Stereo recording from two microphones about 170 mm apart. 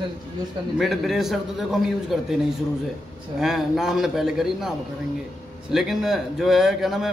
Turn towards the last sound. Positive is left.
turn(degrees=0)  # may be behind; listen again after turning